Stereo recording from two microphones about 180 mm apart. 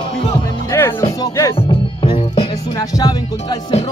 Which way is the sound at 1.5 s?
25° left (ahead or behind).